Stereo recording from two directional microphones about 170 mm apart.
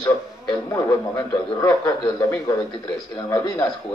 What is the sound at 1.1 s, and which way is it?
A man's voice, 20° left (ahead or behind).